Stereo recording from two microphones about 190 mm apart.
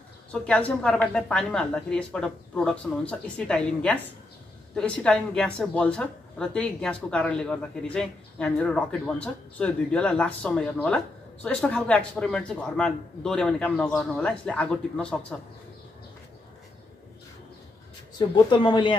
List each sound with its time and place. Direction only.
0.3 s a woman's voice: 5° left (ahead or behind)
18.3 s speech: 25° left (ahead or behind)